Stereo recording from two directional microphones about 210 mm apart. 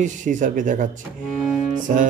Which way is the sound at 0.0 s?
35° right (ahead or behind).